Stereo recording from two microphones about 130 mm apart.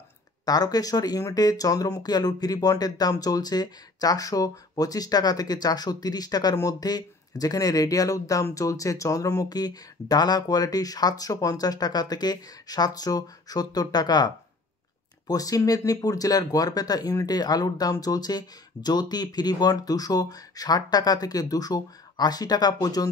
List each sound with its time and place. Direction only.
0.5 s speech: 30° left (ahead or behind)